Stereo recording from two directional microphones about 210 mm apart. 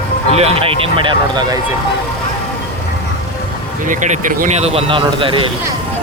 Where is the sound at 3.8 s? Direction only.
35° right (ahead or behind).